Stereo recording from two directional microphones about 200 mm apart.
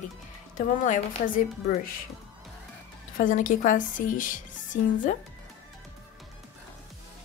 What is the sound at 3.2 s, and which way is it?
A woman's voice, 40° left (ahead or behind).